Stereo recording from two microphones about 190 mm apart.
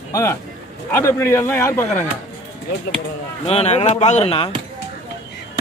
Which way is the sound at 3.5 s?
35° left (ahead or behind).